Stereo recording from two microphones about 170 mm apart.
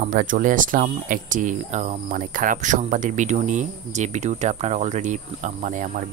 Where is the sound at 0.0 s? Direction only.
50° right (ahead or behind).